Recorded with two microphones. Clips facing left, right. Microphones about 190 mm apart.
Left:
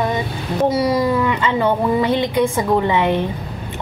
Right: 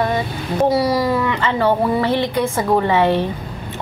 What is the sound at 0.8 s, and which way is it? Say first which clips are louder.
Speech: left 1 dB; 20° left (ahead or behind).